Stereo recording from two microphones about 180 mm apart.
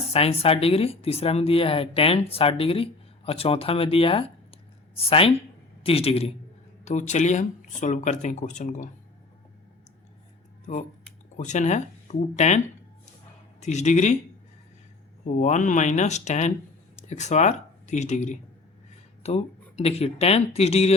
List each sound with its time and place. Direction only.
0.1 s speech: 35° left (ahead or behind)
11.3 s speech: 40° left (ahead or behind)
15.2 s speech: 45° left (ahead or behind)